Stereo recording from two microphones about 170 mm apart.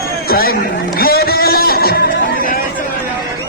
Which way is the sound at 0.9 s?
60° left (ahead or behind).